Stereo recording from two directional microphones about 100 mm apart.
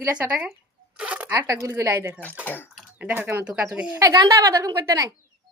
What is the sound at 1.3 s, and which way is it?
Speech, 35° right (ahead or behind).